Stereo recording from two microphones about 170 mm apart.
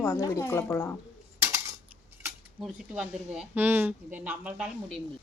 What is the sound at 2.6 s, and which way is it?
Speech, 5° right (ahead or behind).